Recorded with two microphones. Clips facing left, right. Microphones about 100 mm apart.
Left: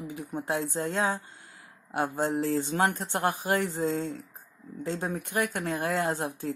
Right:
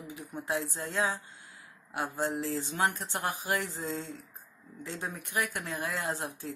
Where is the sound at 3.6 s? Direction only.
55° left (ahead or behind).